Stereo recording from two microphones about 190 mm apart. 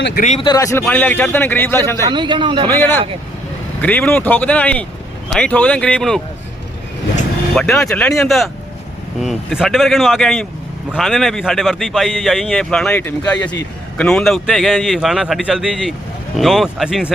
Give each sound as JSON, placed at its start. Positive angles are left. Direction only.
{"t": 0.2, "sound": "speech", "side_deg": 35}
{"t": 0.4, "sound": "a man's voice", "side_deg": 20}
{"t": 2.0, "sound": "a man's voice", "side_deg": -25}
{"t": 2.6, "sound": "a man's voice", "side_deg": 10}
{"t": 7.5, "sound": "a man's voice", "side_deg": 5}